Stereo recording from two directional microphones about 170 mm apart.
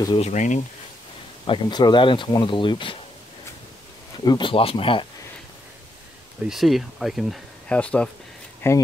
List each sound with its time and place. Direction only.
0.2 s speech: 45° left (ahead or behind)
1.4 s speech: 25° left (ahead or behind)
4.2 s speech: 25° left (ahead or behind)
6.4 s speech: centre (ahead or behind); by 8.8 s 15° left (ahead or behind)